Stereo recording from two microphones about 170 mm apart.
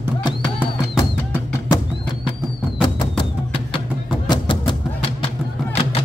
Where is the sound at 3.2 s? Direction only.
30° left (ahead or behind).